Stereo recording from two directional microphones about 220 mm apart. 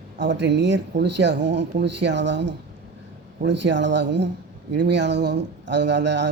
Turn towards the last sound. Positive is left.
turn(degrees=-50)  # may be behind; listen again after turning